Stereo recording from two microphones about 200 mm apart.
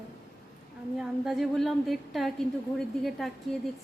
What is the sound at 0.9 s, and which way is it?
A woman's voice, centre (ahead or behind).